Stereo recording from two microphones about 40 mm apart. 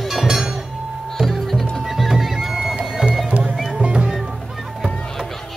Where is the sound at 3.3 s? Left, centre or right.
Right.